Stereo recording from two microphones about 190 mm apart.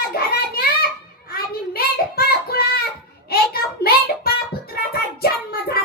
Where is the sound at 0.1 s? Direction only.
55° left (ahead or behind).